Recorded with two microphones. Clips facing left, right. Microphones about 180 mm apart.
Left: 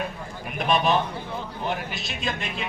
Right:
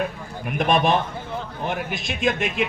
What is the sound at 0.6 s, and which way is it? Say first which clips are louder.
Speech: right 2 dB; 50° right (ahead or behind).